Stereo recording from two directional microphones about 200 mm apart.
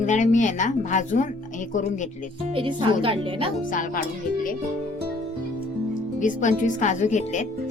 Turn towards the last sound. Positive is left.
turn(degrees=35)  # may be behind; listen again after turning